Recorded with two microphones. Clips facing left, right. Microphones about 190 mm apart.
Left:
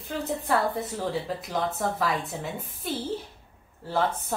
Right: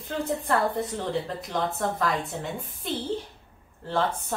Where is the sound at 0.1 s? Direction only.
5° left (ahead or behind).